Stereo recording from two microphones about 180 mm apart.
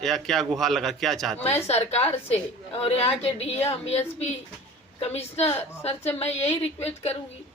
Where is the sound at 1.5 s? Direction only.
35° left (ahead or behind).